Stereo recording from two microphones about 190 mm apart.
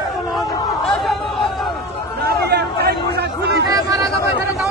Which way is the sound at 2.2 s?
55° right (ahead or behind).